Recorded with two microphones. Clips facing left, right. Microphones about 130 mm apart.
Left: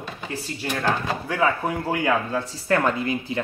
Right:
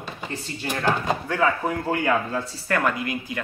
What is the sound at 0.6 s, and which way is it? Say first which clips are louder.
Speech: right 1 dB; 15° right (ahead or behind).